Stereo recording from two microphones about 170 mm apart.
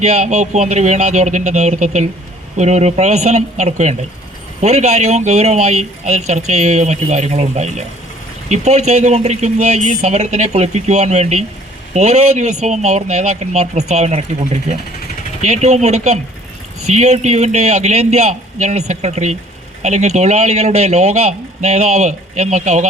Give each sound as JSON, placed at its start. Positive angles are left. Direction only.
{"t": 0.0, "sound": "a man's voice", "side_deg": -40}